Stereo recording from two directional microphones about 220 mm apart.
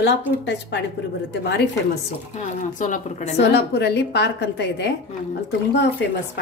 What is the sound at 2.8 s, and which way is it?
Speech, 35° left (ahead or behind).